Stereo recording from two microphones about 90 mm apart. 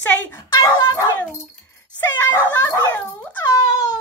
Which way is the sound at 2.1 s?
20° left (ahead or behind).